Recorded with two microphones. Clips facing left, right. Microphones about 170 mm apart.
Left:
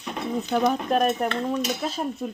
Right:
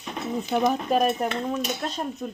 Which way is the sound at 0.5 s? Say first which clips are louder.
Even; 15° right (ahead or behind).